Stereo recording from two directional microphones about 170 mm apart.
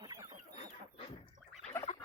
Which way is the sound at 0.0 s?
20° right (ahead or behind).